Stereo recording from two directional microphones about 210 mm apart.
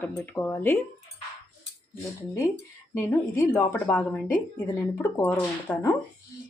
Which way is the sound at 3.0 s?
10° left (ahead or behind).